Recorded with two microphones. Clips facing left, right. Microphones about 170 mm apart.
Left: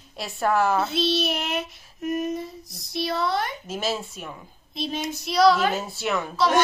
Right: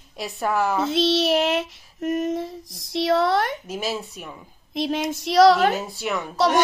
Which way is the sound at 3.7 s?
15° right (ahead or behind).